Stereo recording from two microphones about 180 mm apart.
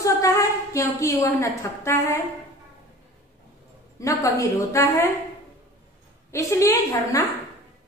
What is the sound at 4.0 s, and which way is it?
A woman's voice, 20° left (ahead or behind).